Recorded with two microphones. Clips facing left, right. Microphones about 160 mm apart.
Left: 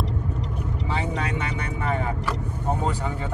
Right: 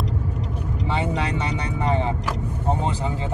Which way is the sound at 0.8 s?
30° right (ahead or behind).